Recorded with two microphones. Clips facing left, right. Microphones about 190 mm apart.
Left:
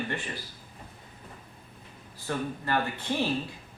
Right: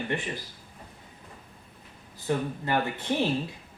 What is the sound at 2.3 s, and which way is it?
Speech, 20° right (ahead or behind).